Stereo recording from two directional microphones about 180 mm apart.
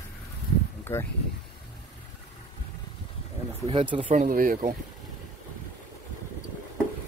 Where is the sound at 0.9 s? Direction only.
15° left (ahead or behind).